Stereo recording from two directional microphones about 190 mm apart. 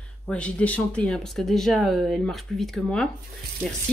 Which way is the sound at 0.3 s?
5° left (ahead or behind).